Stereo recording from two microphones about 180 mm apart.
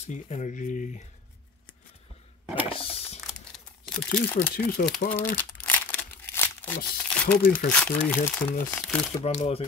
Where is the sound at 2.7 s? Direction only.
30° left (ahead or behind).